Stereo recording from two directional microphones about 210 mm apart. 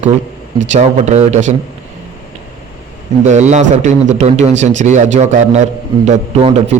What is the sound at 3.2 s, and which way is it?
A man's voice, 35° right (ahead or behind).